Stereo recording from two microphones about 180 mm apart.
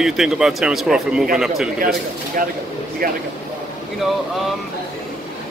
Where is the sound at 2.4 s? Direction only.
50° right (ahead or behind).